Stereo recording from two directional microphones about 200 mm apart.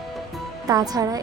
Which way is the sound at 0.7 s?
15° right (ahead or behind).